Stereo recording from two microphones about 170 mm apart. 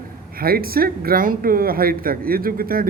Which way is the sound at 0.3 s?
60° right (ahead or behind).